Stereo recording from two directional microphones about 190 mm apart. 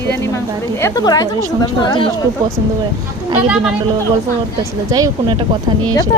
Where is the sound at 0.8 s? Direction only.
20° left (ahead or behind).